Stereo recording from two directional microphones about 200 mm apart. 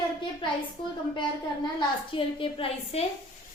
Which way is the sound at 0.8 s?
25° left (ahead or behind).